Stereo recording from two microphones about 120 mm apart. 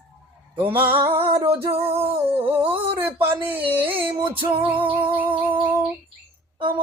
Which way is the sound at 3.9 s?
45° right (ahead or behind).